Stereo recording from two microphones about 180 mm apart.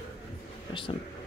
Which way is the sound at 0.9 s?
30° left (ahead or behind).